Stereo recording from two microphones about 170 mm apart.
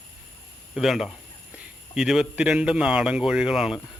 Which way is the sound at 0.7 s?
Centre (ahead or behind).